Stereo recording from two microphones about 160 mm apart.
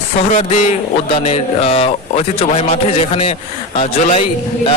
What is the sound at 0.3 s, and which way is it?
A man's voice, 40° left (ahead or behind).